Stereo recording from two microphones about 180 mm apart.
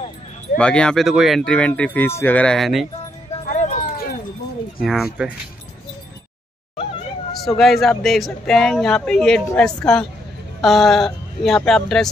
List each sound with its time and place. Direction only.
0.6 s speech: 5° left (ahead or behind)
3.5 s a sound: 45° left (ahead or behind)
4.8 s speech: centre (ahead or behind)
7.4 s speech: centre (ahead or behind)